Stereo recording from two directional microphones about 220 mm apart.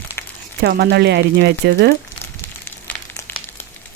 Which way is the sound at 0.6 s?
50° right (ahead or behind).